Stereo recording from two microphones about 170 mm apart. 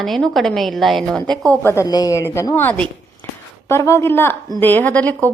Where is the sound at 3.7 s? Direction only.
15° left (ahead or behind).